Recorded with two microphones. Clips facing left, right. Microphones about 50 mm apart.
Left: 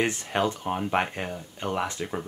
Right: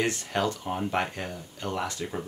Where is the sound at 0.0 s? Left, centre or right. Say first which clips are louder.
Left 2 dB; left.